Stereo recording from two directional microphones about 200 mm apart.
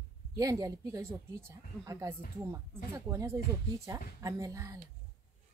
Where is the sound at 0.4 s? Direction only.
15° right (ahead or behind).